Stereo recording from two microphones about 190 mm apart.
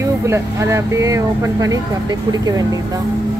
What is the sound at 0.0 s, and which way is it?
Speech, 15° right (ahead or behind).